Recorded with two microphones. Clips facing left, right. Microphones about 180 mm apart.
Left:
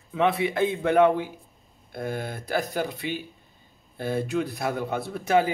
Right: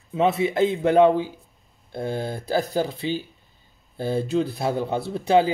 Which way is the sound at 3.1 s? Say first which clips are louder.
Right 5 dB; 90° right.